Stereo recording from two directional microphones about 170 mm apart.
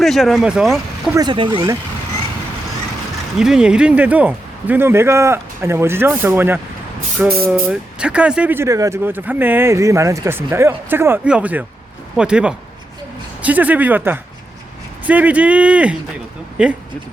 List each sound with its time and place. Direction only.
0.0 s speech: centre (ahead or behind)
1.1 s speech: 25° right (ahead or behind)
3.3 s speech: 5° right (ahead or behind)